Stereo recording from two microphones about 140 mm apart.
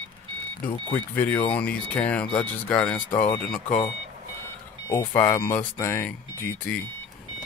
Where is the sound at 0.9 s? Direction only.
10° left (ahead or behind).